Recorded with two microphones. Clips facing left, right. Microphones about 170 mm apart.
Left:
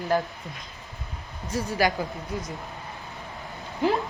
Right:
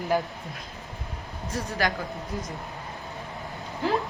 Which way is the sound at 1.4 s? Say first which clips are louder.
Left 3 dB; centre (ahead or behind).